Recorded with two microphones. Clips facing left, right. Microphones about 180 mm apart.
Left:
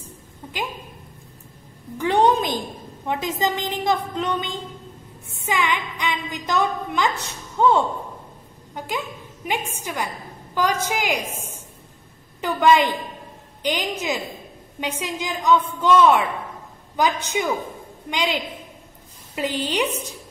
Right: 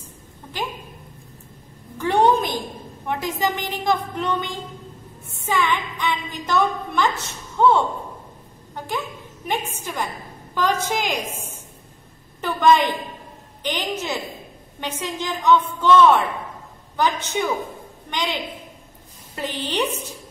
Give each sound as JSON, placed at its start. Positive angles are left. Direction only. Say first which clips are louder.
{"t": 2.0, "sound": "a sound", "louder": "even", "side_deg": 15}
{"t": 3.1, "sound": "a woman's voice", "louder": "even", "side_deg": 20}
{"t": 12.4, "sound": "a woman's voice", "louder": "even", "side_deg": 10}